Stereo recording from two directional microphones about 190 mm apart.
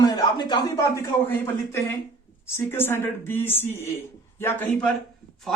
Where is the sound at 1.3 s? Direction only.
10° left (ahead or behind).